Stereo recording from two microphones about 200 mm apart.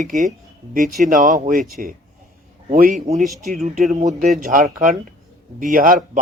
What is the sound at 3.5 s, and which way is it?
Speech, 35° right (ahead or behind).